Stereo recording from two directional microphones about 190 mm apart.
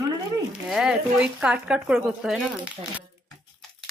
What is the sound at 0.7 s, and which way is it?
Speech, centre (ahead or behind).